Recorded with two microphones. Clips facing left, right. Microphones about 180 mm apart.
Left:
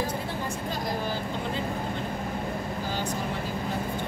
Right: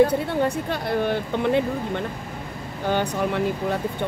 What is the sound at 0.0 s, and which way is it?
Speech, 65° right (ahead or behind).